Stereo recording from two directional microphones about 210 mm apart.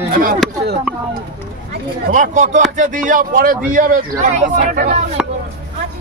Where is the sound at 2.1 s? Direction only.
40° right (ahead or behind).